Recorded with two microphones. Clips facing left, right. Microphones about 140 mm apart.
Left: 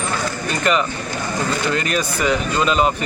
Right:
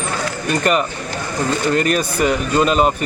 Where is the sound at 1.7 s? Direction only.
45° right (ahead or behind).